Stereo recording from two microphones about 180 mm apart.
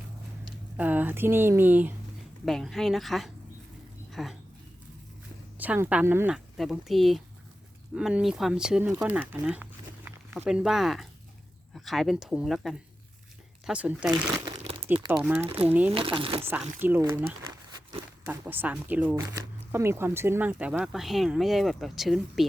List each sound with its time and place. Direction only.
0.8 s speech: 10° right (ahead or behind)
2.4 s speech: centre (ahead or behind)
5.5 s speech: 10° right (ahead or behind)
14.7 s crumpling: 35° right (ahead or behind)
15.1 s speech: 10° right (ahead or behind)
16.0 s speech: 30° right (ahead or behind)
16.4 s speech: 10° right (ahead or behind)
18.3 s speech: 10° right (ahead or behind)